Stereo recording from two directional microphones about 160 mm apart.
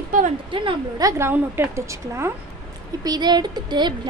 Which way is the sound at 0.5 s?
30° right (ahead or behind).